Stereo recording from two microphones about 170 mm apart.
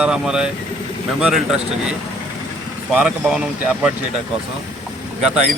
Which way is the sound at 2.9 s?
5° right (ahead or behind).